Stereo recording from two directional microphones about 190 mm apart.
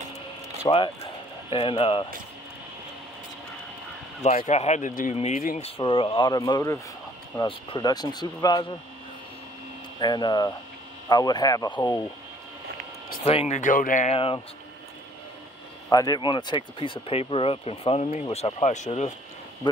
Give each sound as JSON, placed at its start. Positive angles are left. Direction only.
{"t": 0.7, "sound": "speech", "side_deg": 25}
{"t": 4.2, "sound": "speech", "side_deg": 35}
{"t": 5.6, "sound": "speech", "side_deg": 25}
{"t": 9.9, "sound": "speech", "side_deg": 20}
{"t": 13.2, "sound": "speech", "side_deg": 30}
{"t": 15.9, "sound": "speech", "side_deg": 20}